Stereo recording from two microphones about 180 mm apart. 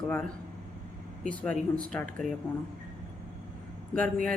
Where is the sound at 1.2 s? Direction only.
5° left (ahead or behind).